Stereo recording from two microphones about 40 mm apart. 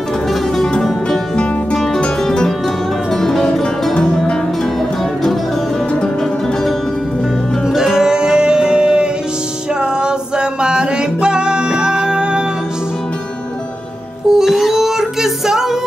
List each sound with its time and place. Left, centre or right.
0.3 s music: centre
1.3 s music: left; by 3.6 s centre
7.6 s music: centre
14.3 s music: centre